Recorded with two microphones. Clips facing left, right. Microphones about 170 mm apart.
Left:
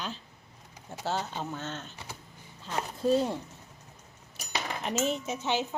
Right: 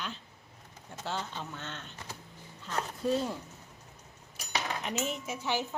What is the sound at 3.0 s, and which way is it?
Speech, 25° left (ahead or behind).